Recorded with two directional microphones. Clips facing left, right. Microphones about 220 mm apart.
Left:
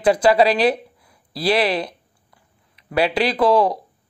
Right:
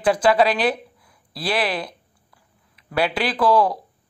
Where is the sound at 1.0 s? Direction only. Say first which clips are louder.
Left 6 dB; 25° left (ahead or behind).